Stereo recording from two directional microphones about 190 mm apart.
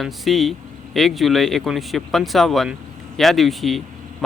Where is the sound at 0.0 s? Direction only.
Centre (ahead or behind).